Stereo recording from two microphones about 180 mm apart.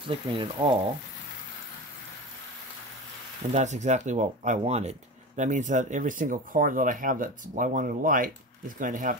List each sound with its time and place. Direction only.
0.1 s speech: 30° right (ahead or behind)
3.5 s speech: 40° right (ahead or behind)